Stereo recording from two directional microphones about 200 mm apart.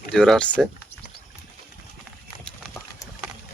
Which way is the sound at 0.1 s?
5° left (ahead or behind).